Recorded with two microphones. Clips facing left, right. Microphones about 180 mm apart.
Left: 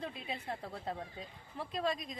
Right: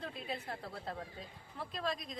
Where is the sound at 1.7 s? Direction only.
Centre (ahead or behind).